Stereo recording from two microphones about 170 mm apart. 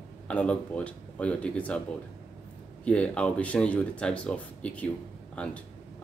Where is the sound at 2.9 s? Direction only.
5° left (ahead or behind).